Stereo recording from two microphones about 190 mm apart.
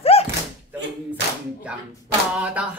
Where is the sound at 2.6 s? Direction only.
5° right (ahead or behind).